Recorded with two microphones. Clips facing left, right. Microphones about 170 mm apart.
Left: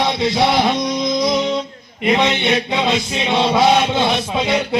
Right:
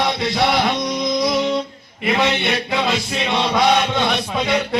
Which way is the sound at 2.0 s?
20° left (ahead or behind).